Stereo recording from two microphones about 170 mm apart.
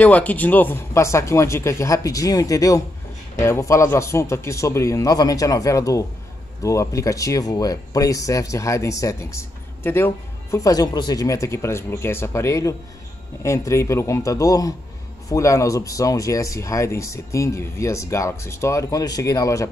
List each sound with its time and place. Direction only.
0.0 s speech: 10° left (ahead or behind)